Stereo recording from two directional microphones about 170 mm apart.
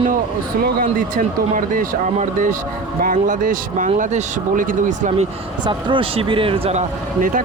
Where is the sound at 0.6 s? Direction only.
55° right (ahead or behind).